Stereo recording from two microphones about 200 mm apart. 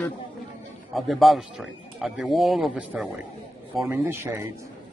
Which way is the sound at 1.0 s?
Centre (ahead or behind).